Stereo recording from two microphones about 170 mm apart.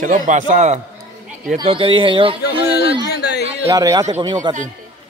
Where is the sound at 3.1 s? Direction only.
80° left.